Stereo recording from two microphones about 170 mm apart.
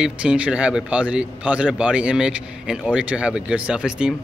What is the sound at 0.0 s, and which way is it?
A man's voice, 5° right (ahead or behind).